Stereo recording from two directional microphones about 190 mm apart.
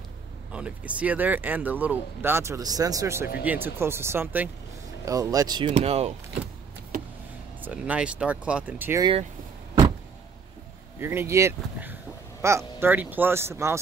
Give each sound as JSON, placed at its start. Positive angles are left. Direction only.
{"t": 0.5, "sound": "speech", "side_deg": -5}
{"t": 7.6, "sound": "speech", "side_deg": -5}
{"t": 11.0, "sound": "speech", "side_deg": -15}